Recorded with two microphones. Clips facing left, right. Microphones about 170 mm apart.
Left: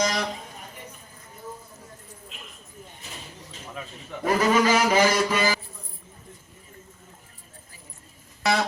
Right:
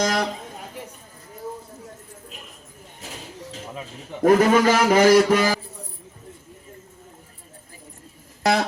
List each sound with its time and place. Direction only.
0.0 s speech: 50° right (ahead or behind)
4.2 s a man's voice: 50° right (ahead or behind)